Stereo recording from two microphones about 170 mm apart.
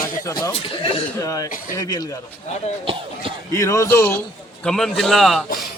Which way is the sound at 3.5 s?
15° left (ahead or behind).